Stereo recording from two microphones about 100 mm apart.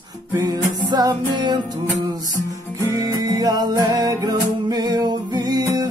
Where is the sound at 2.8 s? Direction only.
40° right (ahead or behind).